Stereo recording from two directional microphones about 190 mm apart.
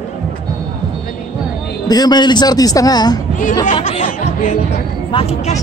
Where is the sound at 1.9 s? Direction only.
20° left (ahead or behind).